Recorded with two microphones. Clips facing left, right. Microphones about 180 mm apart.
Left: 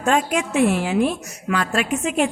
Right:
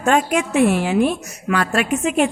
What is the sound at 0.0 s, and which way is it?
A man's voice, 60° right (ahead or behind).